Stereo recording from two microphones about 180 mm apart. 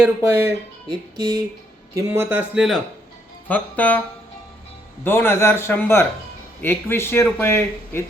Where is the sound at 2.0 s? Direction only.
15° right (ahead or behind).